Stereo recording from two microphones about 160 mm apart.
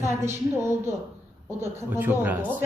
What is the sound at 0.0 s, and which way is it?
Speech, 15° right (ahead or behind).